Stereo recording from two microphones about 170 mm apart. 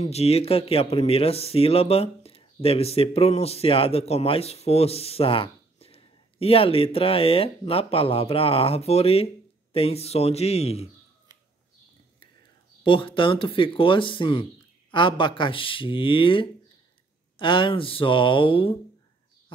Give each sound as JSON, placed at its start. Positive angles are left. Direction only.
{"t": 0.0, "sound": "speech", "side_deg": 35}
{"t": 12.8, "sound": "speech", "side_deg": 30}